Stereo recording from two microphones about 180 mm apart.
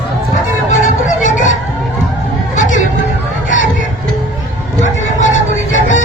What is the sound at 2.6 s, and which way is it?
Chatter, 45° left (ahead or behind).